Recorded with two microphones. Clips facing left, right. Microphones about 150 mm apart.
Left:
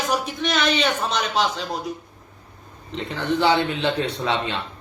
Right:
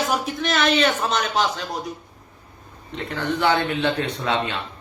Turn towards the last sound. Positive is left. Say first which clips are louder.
# even
turn(degrees=30)  # may be behind; listen again after turning